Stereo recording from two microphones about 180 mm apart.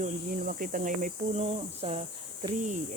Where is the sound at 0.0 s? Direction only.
45° right (ahead or behind).